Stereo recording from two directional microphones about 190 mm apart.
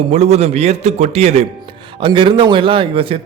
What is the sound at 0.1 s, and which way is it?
A man's voice, 35° right (ahead or behind).